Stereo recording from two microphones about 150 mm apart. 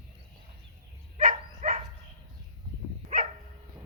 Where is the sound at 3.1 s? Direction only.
60° right (ahead or behind).